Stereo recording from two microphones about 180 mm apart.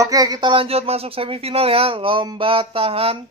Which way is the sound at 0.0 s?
20° right (ahead or behind).